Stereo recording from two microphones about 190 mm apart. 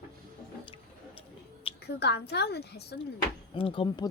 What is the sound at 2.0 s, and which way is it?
A woman's voice, 60° left (ahead or behind).